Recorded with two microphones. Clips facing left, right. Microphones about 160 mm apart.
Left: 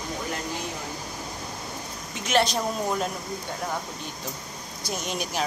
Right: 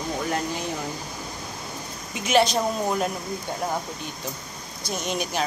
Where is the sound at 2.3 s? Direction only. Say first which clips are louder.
Right 3 dB; centre (ahead or behind).